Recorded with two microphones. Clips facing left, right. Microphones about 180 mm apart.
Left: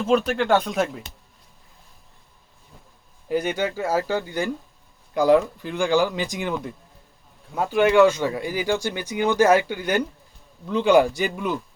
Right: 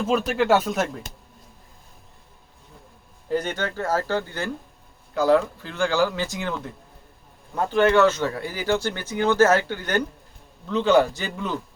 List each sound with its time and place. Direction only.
0.1 s speech: centre (ahead or behind)
3.2 s speech: 10° left (ahead or behind)